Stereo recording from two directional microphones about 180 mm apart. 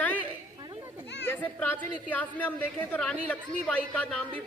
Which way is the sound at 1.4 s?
10° left (ahead or behind).